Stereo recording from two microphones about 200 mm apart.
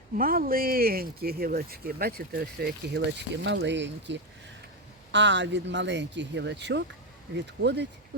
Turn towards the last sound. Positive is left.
turn(degrees=-60)  # may be behind; listen again after turning